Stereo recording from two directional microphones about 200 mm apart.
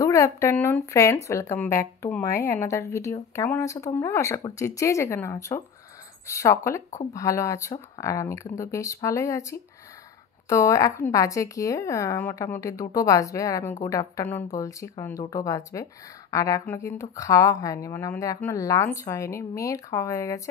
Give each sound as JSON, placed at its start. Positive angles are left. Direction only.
{"t": 0.0, "sound": "speech", "side_deg": 15}